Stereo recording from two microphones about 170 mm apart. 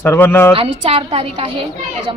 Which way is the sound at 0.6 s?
30° right (ahead or behind).